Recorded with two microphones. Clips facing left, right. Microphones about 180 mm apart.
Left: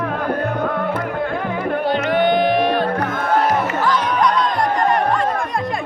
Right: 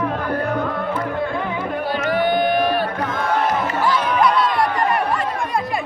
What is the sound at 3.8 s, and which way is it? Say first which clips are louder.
Music: even; 10° right (ahead or behind).